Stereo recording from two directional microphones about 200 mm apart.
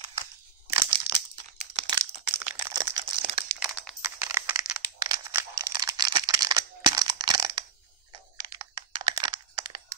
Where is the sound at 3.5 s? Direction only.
5° right (ahead or behind).